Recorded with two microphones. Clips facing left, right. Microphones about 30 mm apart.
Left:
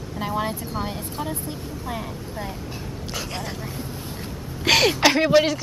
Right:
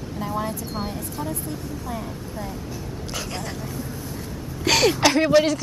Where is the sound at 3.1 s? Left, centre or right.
Centre.